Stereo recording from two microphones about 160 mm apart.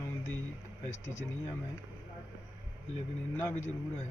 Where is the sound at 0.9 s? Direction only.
45° left (ahead or behind).